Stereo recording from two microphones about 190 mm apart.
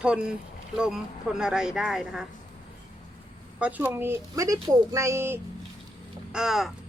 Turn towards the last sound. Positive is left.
turn(degrees=0)  # may be behind; listen again after turning